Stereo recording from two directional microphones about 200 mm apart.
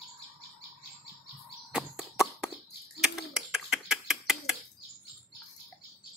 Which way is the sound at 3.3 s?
Centre (ahead or behind).